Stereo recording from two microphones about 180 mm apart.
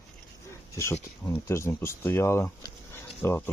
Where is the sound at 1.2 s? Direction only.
15° left (ahead or behind).